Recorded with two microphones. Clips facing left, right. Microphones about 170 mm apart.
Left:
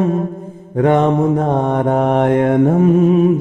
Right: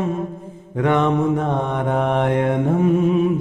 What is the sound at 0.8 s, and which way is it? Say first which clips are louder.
Mantra: left 5 dB; 40° left (ahead or behind).